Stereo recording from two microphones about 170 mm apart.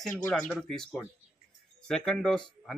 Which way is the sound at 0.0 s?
5° left (ahead or behind).